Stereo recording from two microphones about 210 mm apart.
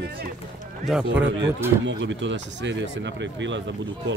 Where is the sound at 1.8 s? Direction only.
60° right (ahead or behind).